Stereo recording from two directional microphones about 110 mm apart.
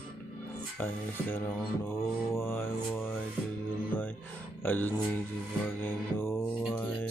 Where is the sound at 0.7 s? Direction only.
15° left (ahead or behind).